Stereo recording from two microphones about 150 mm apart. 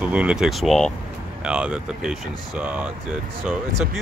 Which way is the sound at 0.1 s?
5° right (ahead or behind).